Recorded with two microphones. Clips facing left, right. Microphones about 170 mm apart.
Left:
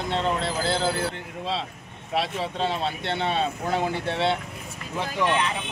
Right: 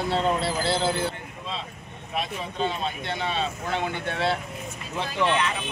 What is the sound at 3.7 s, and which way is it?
Speech, 35° left (ahead or behind).